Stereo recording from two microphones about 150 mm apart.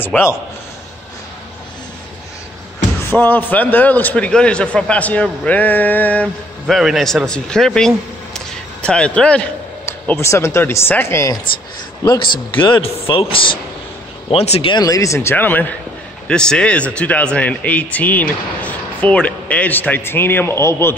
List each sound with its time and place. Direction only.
0.0 s a man's voice: 15° left (ahead or behind)
3.1 s speech: 10° left (ahead or behind)
6.7 s speech: centre (ahead or behind)
9.8 s speech: 15° left (ahead or behind)
12.0 s a man's voice: 30° left (ahead or behind)
14.7 s speech: 25° left (ahead or behind)